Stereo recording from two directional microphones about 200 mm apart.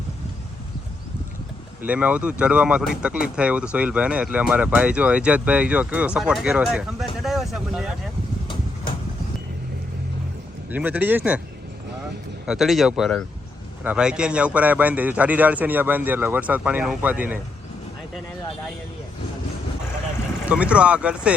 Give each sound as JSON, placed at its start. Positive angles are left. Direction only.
{"t": 1.8, "sound": "speech", "side_deg": -5}
{"t": 8.4, "sound": "a sound", "side_deg": 25}
{"t": 10.7, "sound": "speech", "side_deg": -10}
{"t": 12.5, "sound": "speech", "side_deg": 0}
{"t": 20.4, "sound": "speech", "side_deg": -5}